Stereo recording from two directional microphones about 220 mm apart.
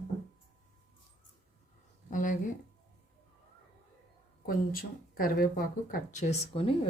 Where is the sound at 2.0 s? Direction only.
35° left (ahead or behind).